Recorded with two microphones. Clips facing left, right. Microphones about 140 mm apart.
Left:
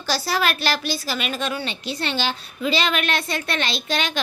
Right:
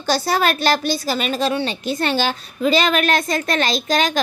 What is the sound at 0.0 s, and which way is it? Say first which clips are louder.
A woman's voice: right 4 dB; 50° right (ahead or behind).